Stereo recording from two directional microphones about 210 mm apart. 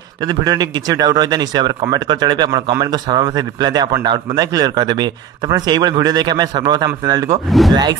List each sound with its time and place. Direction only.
0.3 s speech: 20° right (ahead or behind)
7.4 s speech: centre (ahead or behind)